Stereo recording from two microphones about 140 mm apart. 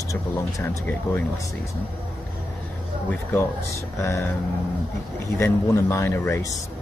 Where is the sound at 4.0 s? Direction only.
15° left (ahead or behind).